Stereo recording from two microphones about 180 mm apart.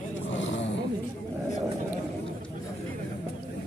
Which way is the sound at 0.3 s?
90° left.